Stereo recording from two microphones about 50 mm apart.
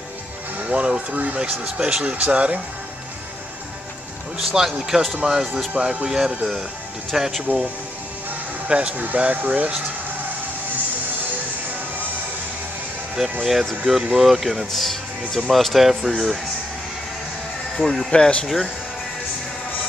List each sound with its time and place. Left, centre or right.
0.7 s speech: right
1.6 s speech: centre
2.0 s speech: right
4.4 s speech: centre
8.6 s speech: right
8.9 s speech: right
13.5 s speech: centre
17.7 s speech: centre
18.1 s speech: centre